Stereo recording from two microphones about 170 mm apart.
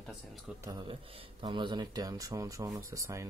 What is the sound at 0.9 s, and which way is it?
Speech, 30° right (ahead or behind).